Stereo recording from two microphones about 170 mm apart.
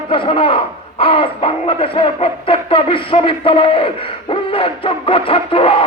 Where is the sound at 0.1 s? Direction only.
30° left (ahead or behind).